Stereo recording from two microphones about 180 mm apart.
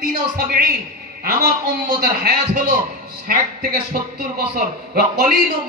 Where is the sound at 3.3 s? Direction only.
55° right (ahead or behind).